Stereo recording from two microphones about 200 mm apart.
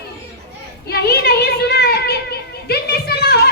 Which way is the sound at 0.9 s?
50° left (ahead or behind).